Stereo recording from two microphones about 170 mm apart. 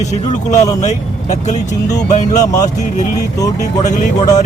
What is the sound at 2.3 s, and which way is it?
Speech, 20° left (ahead or behind).